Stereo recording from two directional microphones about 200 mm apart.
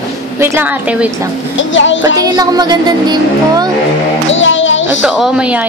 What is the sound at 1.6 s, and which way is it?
Music, 70° left (ahead or behind).